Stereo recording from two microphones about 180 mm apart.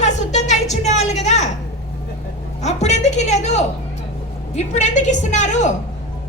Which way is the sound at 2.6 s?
40° left (ahead or behind).